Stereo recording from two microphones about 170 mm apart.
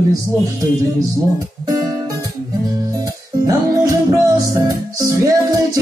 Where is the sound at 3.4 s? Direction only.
20° right (ahead or behind).